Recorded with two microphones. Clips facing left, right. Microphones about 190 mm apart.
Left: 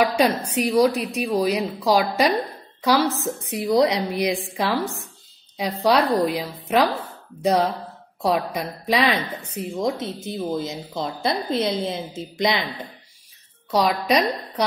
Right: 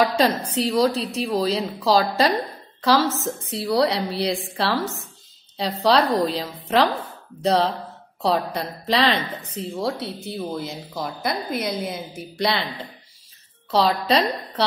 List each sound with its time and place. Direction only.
0.0 s a woman's voice: 15° left (ahead or behind)
6.2 s a woman's voice: 10° left (ahead or behind)
13.7 s a woman's voice: 15° left (ahead or behind)